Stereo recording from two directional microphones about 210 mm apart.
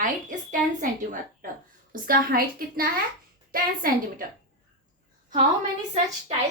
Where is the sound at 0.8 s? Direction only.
40° right (ahead or behind).